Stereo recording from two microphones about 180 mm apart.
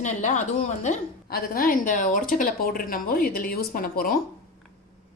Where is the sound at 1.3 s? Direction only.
50° left (ahead or behind).